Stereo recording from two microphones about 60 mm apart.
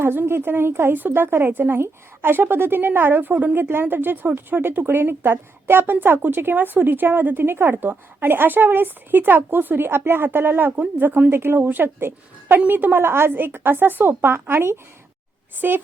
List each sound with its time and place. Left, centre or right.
0.0 s a woman's voice: right